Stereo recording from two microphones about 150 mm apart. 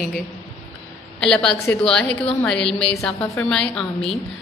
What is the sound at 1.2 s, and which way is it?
A woman's voice, 5° left (ahead or behind).